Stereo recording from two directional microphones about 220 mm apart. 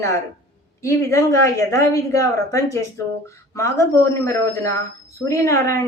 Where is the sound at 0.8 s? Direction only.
15° left (ahead or behind).